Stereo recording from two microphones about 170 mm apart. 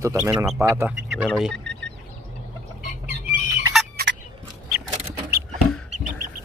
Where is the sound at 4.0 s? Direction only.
65° right (ahead or behind).